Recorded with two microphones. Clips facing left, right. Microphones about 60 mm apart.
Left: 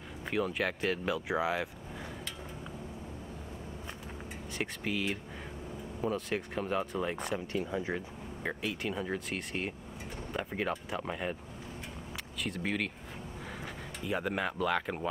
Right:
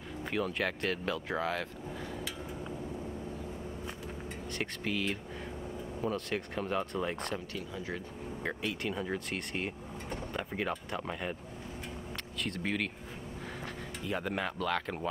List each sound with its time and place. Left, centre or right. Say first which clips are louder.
0.2 s speech: left 1 dB; centre
4.6 s speech: left 1 dB; centre
7.5 s speech: left 5 dB; left
8.5 s speech: left 1 dB; centre
12.4 s speech: even; centre
14.0 s speech: left 2 dB; centre